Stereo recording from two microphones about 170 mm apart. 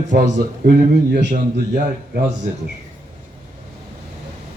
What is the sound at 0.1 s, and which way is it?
A man's voice, 65° right (ahead or behind).